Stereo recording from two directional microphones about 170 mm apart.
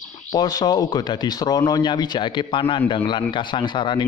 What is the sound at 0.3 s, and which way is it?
Speech, 25° left (ahead or behind).